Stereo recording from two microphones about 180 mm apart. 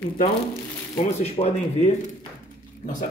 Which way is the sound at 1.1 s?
35° left (ahead or behind).